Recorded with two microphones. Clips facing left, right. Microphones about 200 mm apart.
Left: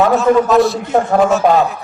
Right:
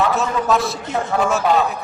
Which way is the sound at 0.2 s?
Centre (ahead or behind).